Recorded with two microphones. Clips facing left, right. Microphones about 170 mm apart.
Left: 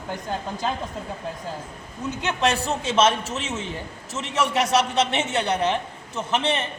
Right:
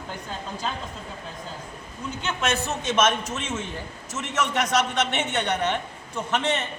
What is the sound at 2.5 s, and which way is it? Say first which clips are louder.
Speech: right 1 dB; 30° left (ahead or behind).